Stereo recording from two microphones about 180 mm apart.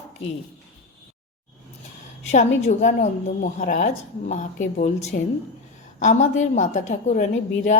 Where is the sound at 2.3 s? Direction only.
40° left (ahead or behind).